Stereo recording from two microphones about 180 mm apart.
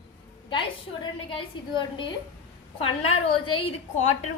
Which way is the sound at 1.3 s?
30° left (ahead or behind).